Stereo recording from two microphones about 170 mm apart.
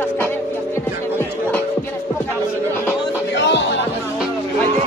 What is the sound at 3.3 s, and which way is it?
Music, 90° left.